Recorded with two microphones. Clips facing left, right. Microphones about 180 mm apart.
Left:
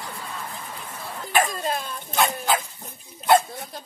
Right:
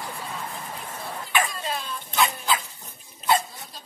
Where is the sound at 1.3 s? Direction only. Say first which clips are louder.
Left 4 dB; 45° left (ahead or behind).